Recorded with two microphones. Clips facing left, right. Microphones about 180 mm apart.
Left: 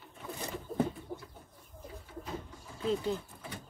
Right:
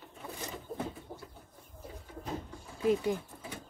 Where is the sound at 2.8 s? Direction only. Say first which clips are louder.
Right 3 dB; 15° right (ahead or behind).